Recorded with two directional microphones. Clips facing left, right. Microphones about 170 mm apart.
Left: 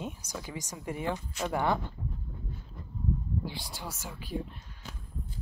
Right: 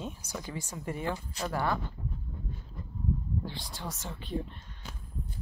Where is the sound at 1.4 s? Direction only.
35° right (ahead or behind).